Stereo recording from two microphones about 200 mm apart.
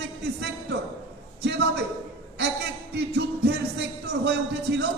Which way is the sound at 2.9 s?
55° right (ahead or behind).